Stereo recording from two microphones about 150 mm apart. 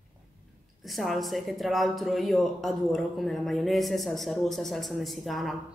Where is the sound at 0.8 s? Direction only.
Centre (ahead or behind).